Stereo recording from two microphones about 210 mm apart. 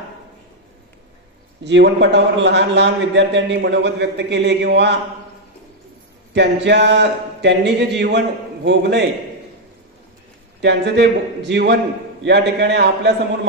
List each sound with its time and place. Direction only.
1.6 s a man's voice: 55° right (ahead or behind)
6.3 s a man's voice: 55° right (ahead or behind)
10.6 s a man's voice: 55° right (ahead or behind)